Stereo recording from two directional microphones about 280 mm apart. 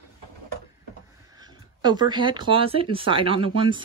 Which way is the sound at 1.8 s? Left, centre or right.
Centre.